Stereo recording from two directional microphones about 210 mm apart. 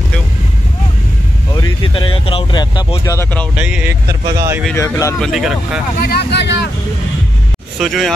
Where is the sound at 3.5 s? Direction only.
5° right (ahead or behind).